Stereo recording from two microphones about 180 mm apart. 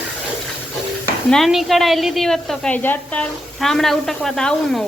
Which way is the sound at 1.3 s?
Centre (ahead or behind).